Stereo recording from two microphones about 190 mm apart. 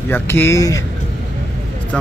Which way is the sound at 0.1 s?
10° left (ahead or behind).